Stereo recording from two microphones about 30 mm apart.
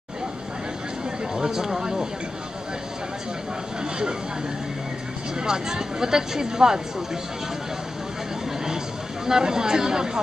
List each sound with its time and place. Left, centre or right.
1.3 s a sound: centre
1.7 s speech: right
5.4 s speech: right
9.2 s speech: right